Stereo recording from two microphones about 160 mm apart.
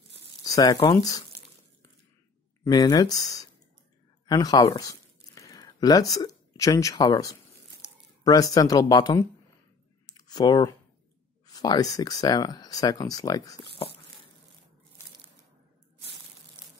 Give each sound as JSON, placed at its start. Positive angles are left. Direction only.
{"t": 0.4, "sound": "speech", "side_deg": 20}
{"t": 2.6, "sound": "speech", "side_deg": 25}
{"t": 10.0, "sound": "a sound", "side_deg": 25}
{"t": 11.4, "sound": "speech", "side_deg": 25}